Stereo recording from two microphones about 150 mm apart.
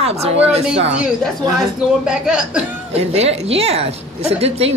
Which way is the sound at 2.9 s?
45° right (ahead or behind).